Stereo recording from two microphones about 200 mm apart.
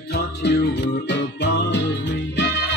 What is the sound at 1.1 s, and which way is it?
Music, 60° left (ahead or behind).